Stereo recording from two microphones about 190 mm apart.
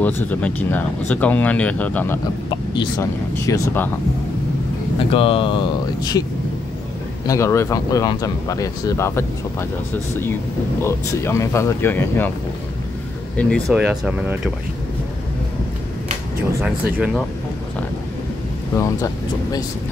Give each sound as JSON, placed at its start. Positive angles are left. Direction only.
{"t": 0.0, "sound": "speech", "side_deg": 10}
{"t": 2.5, "sound": "speech", "side_deg": 25}
{"t": 4.9, "sound": "speech", "side_deg": 30}
{"t": 7.2, "sound": "speech", "side_deg": 15}
{"t": 10.8, "sound": "speech", "side_deg": 15}
{"t": 13.4, "sound": "speech", "side_deg": 0}
{"t": 16.6, "sound": "speech", "side_deg": -5}
{"t": 18.8, "sound": "speech", "side_deg": 15}